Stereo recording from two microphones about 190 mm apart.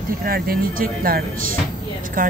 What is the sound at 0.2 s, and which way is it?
Speech, 50° right (ahead or behind).